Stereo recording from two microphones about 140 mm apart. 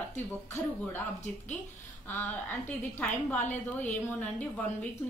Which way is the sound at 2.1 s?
15° left (ahead or behind).